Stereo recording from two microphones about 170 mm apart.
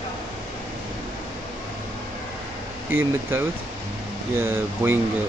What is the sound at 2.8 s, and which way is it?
Speech, 15° right (ahead or behind).